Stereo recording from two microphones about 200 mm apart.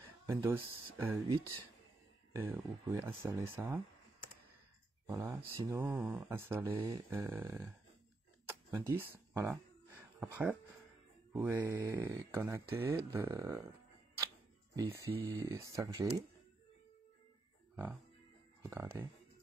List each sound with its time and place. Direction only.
0.3 s speech: 10° right (ahead or behind)
2.3 s speech: 10° right (ahead or behind)
5.0 s speech: 10° right (ahead or behind)
8.5 s a sound: 10° right (ahead or behind)
11.3 s speech: 10° right (ahead or behind)
14.8 s speech: 15° right (ahead or behind)
18.6 s speech: 15° right (ahead or behind)